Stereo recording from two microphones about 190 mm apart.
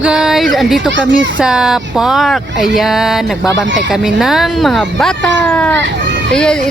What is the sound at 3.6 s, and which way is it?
Speech, 75° right (ahead or behind).